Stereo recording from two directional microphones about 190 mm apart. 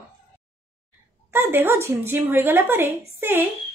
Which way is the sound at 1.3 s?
10° right (ahead or behind).